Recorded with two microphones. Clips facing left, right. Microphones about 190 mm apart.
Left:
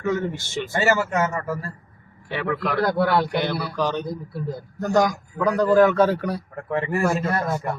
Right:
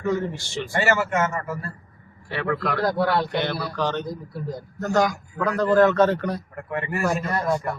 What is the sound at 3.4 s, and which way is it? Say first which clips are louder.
A man's voice: left 1 dB; 15° left (ahead or behind).